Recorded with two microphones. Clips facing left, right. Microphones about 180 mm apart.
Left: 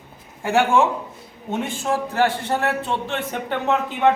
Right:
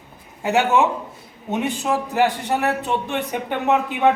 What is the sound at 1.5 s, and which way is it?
A man's voice, 20° right (ahead or behind).